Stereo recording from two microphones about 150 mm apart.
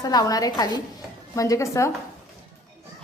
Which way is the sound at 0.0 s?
25° left (ahead or behind).